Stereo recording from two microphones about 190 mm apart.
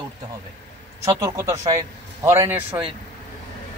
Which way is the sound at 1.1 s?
15° right (ahead or behind).